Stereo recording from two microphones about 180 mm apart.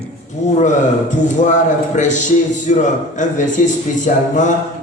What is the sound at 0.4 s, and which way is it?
A man's voice, 40° left (ahead or behind).